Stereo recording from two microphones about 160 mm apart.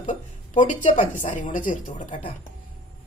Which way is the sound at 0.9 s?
55° left (ahead or behind).